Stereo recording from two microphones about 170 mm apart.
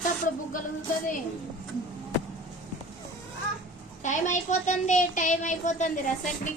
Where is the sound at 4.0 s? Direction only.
45° left (ahead or behind).